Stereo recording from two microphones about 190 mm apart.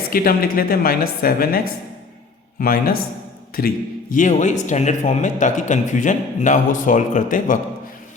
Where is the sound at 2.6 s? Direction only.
50° left (ahead or behind).